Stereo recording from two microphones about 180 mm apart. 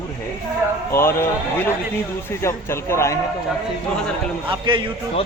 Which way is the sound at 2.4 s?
15° left (ahead or behind).